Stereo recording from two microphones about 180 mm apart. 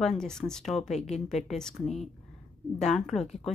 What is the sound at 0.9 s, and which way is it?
Speech, 40° left (ahead or behind).